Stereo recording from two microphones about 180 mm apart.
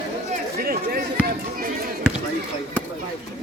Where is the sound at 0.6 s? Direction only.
60° right (ahead or behind).